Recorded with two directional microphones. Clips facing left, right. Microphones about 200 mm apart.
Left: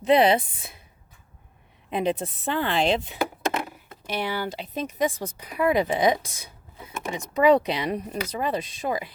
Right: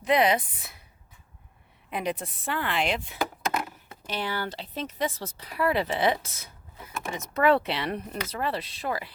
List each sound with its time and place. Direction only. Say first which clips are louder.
0.0 s speech: left 4 dB; 30° left (ahead or behind)
1.9 s speech: left 5 dB; 25° left (ahead or behind)
3.7 s speech: left 3 dB; 10° left (ahead or behind)